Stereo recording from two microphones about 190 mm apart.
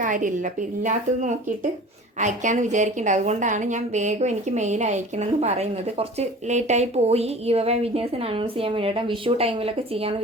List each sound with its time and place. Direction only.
0.0 s a woman's voice: 45° right (ahead or behind)